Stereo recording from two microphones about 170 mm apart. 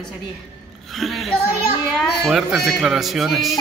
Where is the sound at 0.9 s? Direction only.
Centre (ahead or behind).